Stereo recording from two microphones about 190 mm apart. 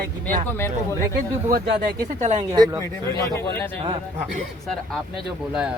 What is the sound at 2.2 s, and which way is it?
Speech, 35° right (ahead or behind).